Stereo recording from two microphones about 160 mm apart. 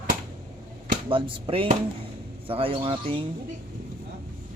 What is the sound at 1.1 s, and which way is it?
Speech, 35° right (ahead or behind).